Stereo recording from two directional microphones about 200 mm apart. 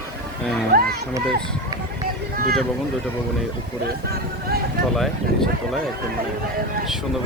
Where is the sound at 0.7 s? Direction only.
50° right (ahead or behind).